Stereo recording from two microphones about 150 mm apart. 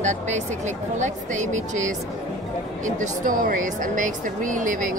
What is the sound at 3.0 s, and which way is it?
Speech, 60° right (ahead or behind).